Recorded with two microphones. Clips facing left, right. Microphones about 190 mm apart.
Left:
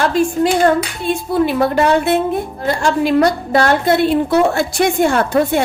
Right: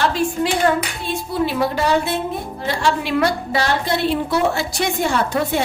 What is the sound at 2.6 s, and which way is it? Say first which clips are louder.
A woman's voice: left 4 dB; 45° left (ahead or behind).